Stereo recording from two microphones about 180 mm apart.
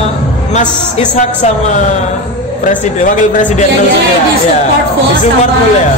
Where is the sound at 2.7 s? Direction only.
45° left (ahead or behind).